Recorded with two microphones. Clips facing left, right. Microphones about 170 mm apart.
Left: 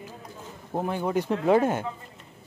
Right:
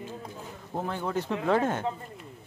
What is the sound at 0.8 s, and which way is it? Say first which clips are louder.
Speech: left 4 dB; 15° left (ahead or behind).